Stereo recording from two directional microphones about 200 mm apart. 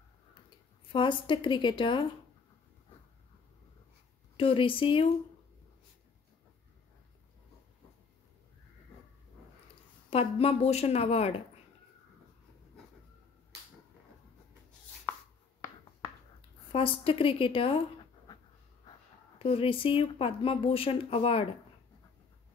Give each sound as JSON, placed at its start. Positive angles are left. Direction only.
{"t": 0.9, "sound": "speech", "side_deg": 25}
{"t": 4.4, "sound": "speech", "side_deg": 25}
{"t": 10.0, "sound": "a woman's voice", "side_deg": 30}
{"t": 16.3, "sound": "speech", "side_deg": 25}
{"t": 19.3, "sound": "speech", "side_deg": 30}